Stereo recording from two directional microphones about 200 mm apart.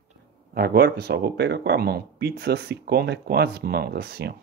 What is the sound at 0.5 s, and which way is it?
Speech, 50° right (ahead or behind).